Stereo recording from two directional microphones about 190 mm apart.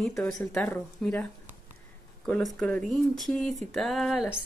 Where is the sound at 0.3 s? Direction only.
15° left (ahead or behind).